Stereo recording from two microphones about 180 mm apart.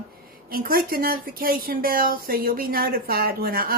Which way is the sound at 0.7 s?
55° right (ahead or behind).